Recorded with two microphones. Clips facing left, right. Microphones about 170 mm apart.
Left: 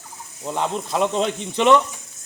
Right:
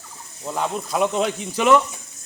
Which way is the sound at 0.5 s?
Centre (ahead or behind).